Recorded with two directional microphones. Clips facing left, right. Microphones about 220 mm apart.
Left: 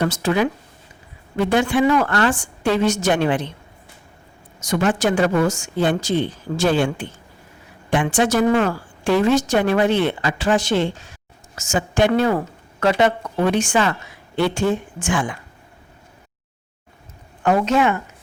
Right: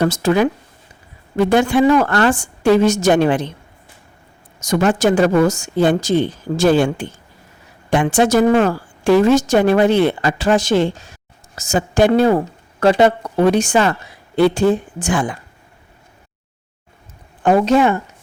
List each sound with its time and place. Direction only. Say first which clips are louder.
0.0 s a woman's voice: right 4 dB; 40° right (ahead or behind)
4.6 s a woman's voice: right 4 dB; 40° right (ahead or behind)
17.4 s a woman's voice: right 4 dB; 35° right (ahead or behind)